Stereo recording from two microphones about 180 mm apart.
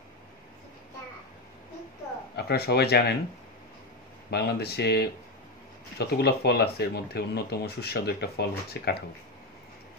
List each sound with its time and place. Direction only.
2.3 s speech: 65° left (ahead or behind)
4.3 s speech: 60° left (ahead or behind)